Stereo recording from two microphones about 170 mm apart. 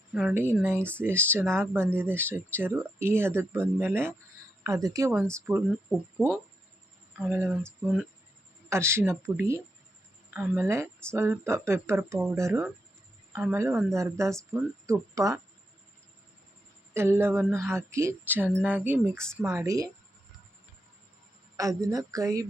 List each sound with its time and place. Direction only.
0.1 s speech: 5° right (ahead or behind)
7.2 s speech: 10° right (ahead or behind)
16.9 s speech: 15° right (ahead or behind)
19.6 s speech: 20° right (ahead or behind)
21.5 s speech: 20° right (ahead or behind)